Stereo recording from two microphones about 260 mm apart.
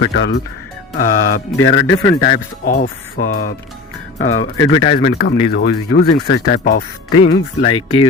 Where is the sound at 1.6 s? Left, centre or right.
Left.